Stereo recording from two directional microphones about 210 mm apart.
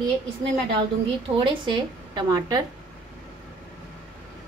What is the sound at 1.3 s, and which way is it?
A woman's voice, 25° right (ahead or behind).